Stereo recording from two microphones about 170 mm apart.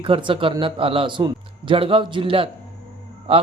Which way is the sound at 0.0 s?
30° right (ahead or behind).